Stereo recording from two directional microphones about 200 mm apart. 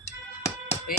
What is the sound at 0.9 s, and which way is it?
Music, 45° left (ahead or behind).